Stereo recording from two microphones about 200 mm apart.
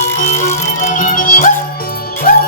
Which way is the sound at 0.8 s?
40° left (ahead or behind).